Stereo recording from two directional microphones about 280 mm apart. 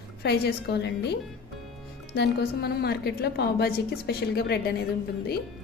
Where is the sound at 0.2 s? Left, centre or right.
Left.